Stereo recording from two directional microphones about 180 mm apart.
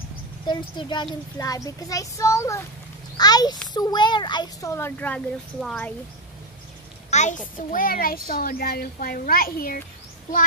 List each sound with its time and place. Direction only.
0.5 s a child's voice: 25° left (ahead or behind); by 5.9 s 5° left (ahead or behind)
7.1 s a child's voice: 40° left (ahead or behind)